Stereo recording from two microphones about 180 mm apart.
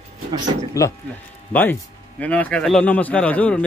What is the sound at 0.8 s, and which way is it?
Speech, 15° left (ahead or behind).